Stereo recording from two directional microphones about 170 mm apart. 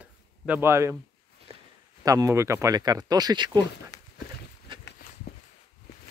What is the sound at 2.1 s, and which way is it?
Speech, 20° right (ahead or behind).